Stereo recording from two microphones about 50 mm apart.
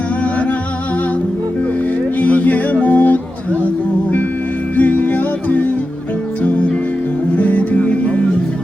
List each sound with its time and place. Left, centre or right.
2.1 s music: left
4.8 s music: left